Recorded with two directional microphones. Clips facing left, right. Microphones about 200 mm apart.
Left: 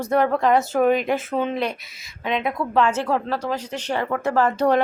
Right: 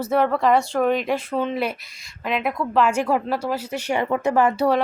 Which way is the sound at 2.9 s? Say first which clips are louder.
Right 2 dB; 10° right (ahead or behind).